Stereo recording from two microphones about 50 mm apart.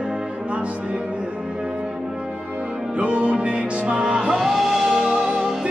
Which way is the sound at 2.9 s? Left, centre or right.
Right.